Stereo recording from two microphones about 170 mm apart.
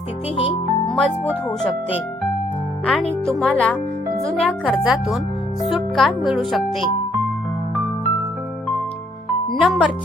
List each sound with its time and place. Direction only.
0.3 s music: 35° left (ahead or behind)
2.8 s speech: 5° left (ahead or behind)
9.6 s speech: 5° right (ahead or behind)